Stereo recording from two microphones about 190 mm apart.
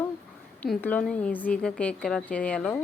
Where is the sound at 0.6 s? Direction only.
10° left (ahead or behind).